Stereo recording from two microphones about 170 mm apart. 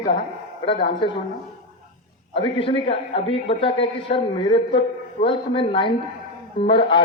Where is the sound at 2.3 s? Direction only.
30° left (ahead or behind).